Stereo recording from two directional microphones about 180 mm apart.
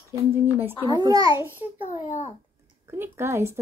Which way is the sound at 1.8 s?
40° left (ahead or behind).